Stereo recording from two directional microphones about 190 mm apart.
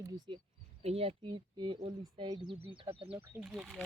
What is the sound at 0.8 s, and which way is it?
Speech, 30° right (ahead or behind).